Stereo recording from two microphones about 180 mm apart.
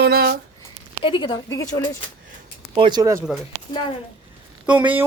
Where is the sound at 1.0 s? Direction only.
25° left (ahead or behind).